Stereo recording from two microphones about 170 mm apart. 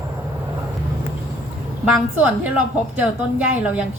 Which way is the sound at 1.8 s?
10° right (ahead or behind).